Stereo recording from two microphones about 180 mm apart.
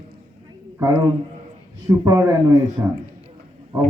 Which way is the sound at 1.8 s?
20° right (ahead or behind).